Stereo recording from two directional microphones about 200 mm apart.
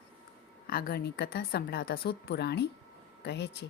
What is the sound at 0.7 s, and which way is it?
A woman's voice, 50° left (ahead or behind).